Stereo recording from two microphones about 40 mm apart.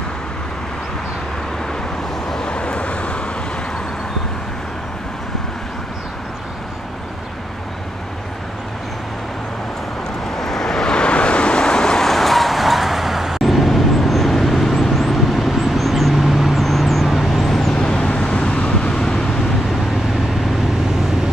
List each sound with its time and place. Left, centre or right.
2.2 s vehicle: centre
2.5 s vehicle: left
10.3 s vehicle: centre
12.1 s vehicle: centre
16.6 s vehicle: centre
17.7 s vehicle: left
18.9 s vehicle: centre